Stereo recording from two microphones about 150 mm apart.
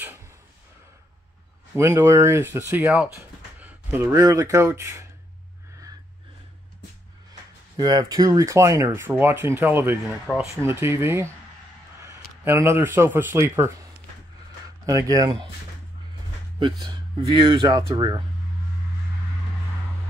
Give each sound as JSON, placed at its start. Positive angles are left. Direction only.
{"t": 1.8, "sound": "speech", "side_deg": -15}
{"t": 7.7, "sound": "speech", "side_deg": -30}
{"t": 15.0, "sound": "speech", "side_deg": -25}
{"t": 16.5, "sound": "speech", "side_deg": -30}